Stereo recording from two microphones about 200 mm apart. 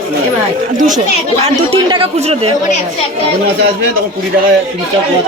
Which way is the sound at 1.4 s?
25° right (ahead or behind).